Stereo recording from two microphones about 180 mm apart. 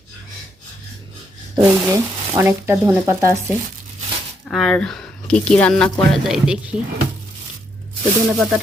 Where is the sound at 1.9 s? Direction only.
15° right (ahead or behind).